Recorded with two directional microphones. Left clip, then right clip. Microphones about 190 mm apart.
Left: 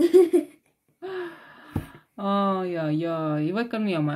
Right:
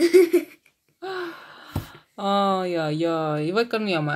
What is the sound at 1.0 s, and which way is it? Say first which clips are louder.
Speech: right 3 dB; 15° right (ahead or behind).